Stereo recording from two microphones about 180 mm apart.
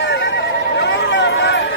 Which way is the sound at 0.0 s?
85° left.